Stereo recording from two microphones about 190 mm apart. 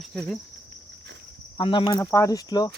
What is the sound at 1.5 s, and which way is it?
Speech, 25° left (ahead or behind).